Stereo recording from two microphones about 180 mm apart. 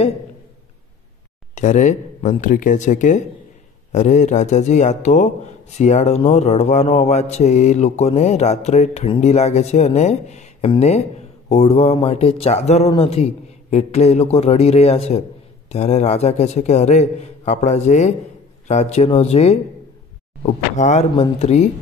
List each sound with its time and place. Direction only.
1.5 s speech: 45° left (ahead or behind)